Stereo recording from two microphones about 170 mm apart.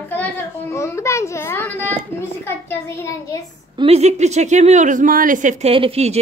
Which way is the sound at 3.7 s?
35° right (ahead or behind).